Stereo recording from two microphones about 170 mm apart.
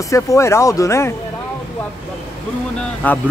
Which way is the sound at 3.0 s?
10° left (ahead or behind).